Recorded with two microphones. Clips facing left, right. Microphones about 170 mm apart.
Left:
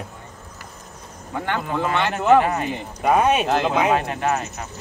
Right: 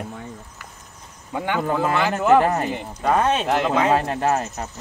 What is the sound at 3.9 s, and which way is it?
Speech, 35° right (ahead or behind).